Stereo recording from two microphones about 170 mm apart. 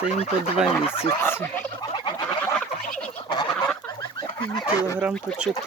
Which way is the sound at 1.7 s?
25° left (ahead or behind).